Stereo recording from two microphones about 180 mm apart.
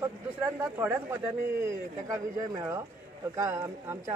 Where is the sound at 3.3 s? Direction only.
15° right (ahead or behind).